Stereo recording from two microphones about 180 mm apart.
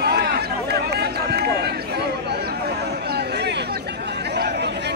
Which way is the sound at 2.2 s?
65° right (ahead or behind).